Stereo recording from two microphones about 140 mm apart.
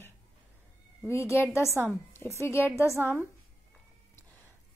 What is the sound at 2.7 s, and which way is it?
Speech, 15° right (ahead or behind).